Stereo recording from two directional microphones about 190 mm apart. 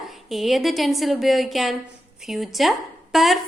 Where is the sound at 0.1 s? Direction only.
Centre (ahead or behind).